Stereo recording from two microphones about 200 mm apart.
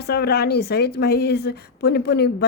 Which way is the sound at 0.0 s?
55° left (ahead or behind).